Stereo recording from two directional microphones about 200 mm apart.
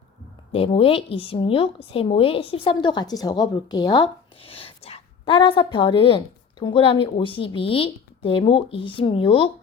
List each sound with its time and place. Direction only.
0.5 s speech: 25° left (ahead or behind)